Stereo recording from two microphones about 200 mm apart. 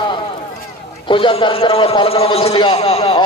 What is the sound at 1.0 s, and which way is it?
A man's voice, 25° left (ahead or behind).